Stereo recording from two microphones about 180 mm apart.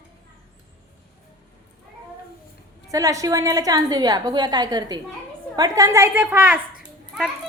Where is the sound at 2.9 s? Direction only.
20° right (ahead or behind).